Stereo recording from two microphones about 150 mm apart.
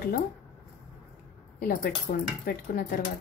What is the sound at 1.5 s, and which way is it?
Speech, 80° left.